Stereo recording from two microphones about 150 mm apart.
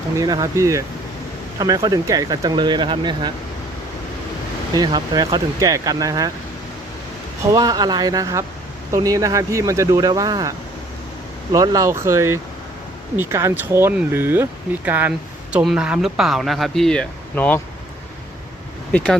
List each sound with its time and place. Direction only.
0.2 s speech: 25° right (ahead or behind)
4.7 s speech: 30° right (ahead or behind)
7.5 s speech: 25° right (ahead or behind)
11.5 s speech: 25° right (ahead or behind); by 17.6 s 10° left (ahead or behind)